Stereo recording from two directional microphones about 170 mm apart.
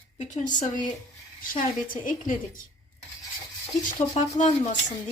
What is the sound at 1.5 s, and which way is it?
A woman's voice, 50° left (ahead or behind).